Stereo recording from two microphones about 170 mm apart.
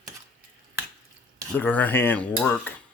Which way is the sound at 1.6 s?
10° left (ahead or behind).